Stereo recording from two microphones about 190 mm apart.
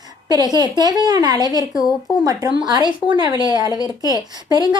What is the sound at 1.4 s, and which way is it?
Speech, 20° left (ahead or behind).